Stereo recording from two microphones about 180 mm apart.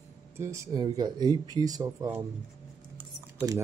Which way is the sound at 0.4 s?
20° right (ahead or behind).